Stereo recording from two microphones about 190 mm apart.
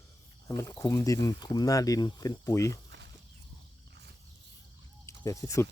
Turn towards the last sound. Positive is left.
turn(degrees=15)  # may be behind; listen again after turning